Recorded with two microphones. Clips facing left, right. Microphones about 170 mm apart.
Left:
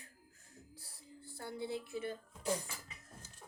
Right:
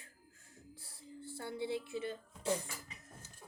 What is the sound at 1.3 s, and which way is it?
A woman's voice, 25° right (ahead or behind).